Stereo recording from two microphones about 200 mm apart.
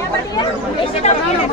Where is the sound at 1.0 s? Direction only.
30° left (ahead or behind).